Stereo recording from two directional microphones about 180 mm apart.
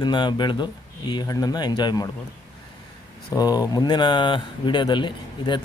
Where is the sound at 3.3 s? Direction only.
20° left (ahead or behind).